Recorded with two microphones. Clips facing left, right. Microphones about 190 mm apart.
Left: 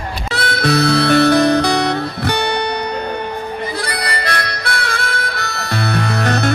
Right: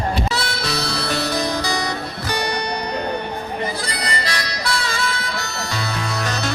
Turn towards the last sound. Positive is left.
turn(degrees=60)  # may be behind; listen again after turning